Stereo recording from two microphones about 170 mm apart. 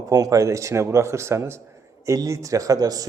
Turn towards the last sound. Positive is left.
turn(degrees=-20)  # may be behind; listen again after turning